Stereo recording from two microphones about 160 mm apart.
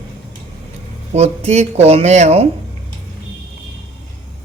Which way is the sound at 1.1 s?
40° right (ahead or behind).